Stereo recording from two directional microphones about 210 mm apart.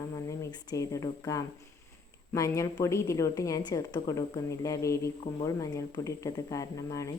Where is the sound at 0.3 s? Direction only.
15° left (ahead or behind).